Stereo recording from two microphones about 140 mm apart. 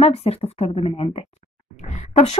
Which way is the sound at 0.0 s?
45° left (ahead or behind).